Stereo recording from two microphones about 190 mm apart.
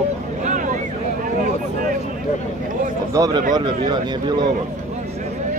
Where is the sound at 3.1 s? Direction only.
20° right (ahead or behind).